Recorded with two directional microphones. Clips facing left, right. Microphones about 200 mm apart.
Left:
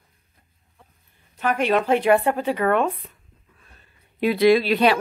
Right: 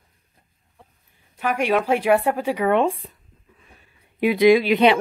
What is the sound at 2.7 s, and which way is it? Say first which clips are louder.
Speech: right 2 dB; 30° right (ahead or behind).